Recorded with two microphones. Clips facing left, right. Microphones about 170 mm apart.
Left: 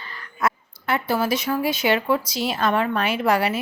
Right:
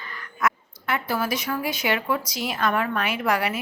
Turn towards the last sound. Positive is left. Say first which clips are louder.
# left 4 dB
turn(degrees=30)  # may be behind; listen again after turning